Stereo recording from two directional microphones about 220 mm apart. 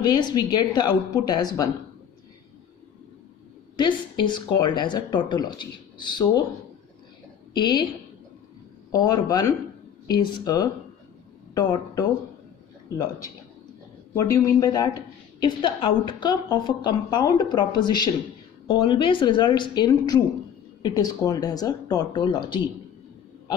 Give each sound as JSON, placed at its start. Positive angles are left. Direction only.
{"t": 0.0, "sound": "a woman's voice", "side_deg": 20}
{"t": 3.7, "sound": "a woman's voice", "side_deg": 20}
{"t": 7.5, "sound": "a woman's voice", "side_deg": 20}
{"t": 8.9, "sound": "speech", "side_deg": 15}
{"t": 14.1, "sound": "a woman's voice", "side_deg": 15}